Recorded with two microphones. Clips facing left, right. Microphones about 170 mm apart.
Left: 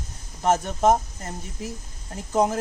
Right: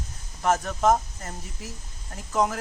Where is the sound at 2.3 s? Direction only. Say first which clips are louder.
Left 3 dB; 25° left (ahead or behind).